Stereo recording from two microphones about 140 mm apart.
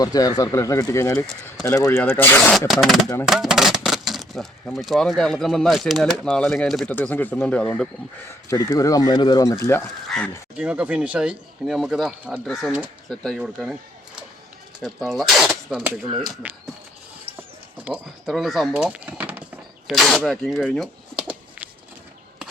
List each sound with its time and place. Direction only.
0.0 s speech: 25° left (ahead or behind)
2.5 s speech: centre (ahead or behind)
8.4 s speech: 25° left (ahead or behind)
9.8 s speech: 5° left (ahead or behind)
10.6 s speech: 10° right (ahead or behind)
14.8 s speech: centre (ahead or behind)
16.4 s speech: 10° right (ahead or behind)
18.3 s speech: centre (ahead or behind)
19.9 s speech: centre (ahead or behind)